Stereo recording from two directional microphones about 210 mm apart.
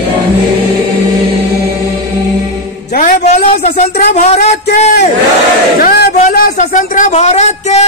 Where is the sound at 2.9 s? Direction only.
35° left (ahead or behind).